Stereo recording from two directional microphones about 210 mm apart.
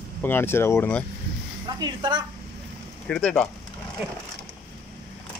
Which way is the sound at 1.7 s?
20° right (ahead or behind).